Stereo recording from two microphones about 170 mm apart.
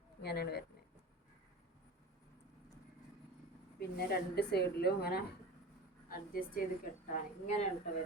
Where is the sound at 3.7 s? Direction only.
70° left (ahead or behind).